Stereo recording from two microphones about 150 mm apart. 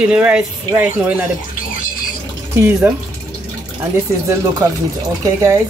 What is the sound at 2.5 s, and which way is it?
Speech, 15° right (ahead or behind).